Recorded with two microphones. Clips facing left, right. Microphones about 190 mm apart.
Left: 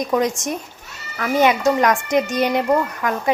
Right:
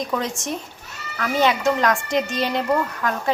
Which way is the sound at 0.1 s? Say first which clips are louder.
Left 5 dB; 15° left (ahead or behind).